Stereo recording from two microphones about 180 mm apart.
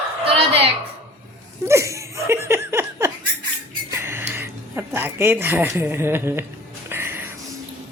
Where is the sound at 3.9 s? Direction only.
15° right (ahead or behind).